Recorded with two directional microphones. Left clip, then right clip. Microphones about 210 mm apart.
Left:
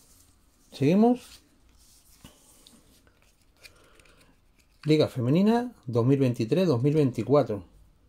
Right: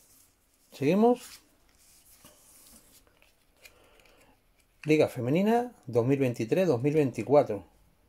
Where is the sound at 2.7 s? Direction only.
20° left (ahead or behind).